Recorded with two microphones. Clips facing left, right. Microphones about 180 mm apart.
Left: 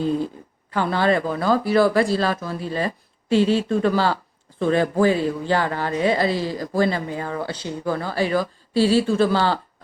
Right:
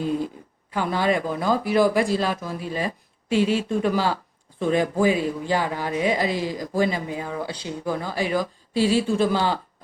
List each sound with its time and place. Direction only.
0.7 s speech: 10° right (ahead or behind)
8.8 s speech: 35° left (ahead or behind)
9.1 s speech: 15° right (ahead or behind)